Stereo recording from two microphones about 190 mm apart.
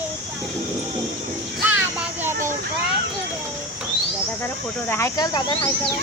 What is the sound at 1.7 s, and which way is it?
Speech, 10° right (ahead or behind).